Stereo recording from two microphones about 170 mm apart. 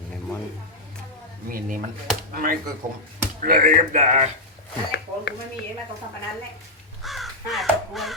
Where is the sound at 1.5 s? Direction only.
55° right (ahead or behind).